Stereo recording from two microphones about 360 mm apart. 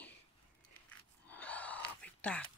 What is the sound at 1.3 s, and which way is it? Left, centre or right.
Gasp, centre.